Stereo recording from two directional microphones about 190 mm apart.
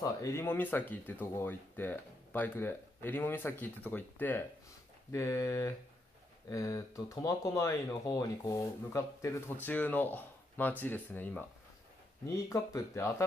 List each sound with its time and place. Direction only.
0.0 s speech: 15° left (ahead or behind)